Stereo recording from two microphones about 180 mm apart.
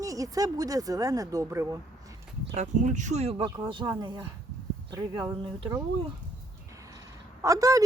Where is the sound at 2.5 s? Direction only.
40° right (ahead or behind); by 5.8 s 20° right (ahead or behind).